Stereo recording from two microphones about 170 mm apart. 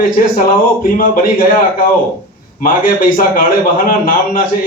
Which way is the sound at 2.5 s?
55° left (ahead or behind).